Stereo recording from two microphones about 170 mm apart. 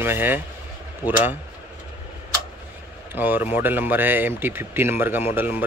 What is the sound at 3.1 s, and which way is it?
Speech, 10° right (ahead or behind).